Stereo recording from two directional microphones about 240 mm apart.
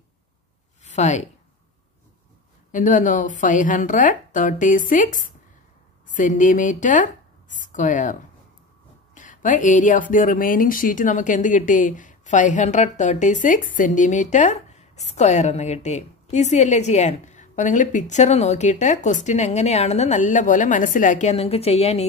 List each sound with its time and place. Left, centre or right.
0.8 s speech: left
2.7 s a woman's voice: left